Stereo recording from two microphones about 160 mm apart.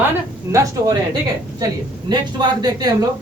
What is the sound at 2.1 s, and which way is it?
Speech, 25° right (ahead or behind).